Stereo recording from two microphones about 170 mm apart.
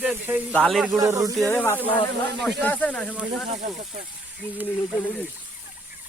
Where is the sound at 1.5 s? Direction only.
10° left (ahead or behind).